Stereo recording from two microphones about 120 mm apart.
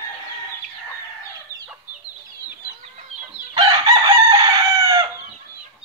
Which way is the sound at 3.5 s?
35° right (ahead or behind).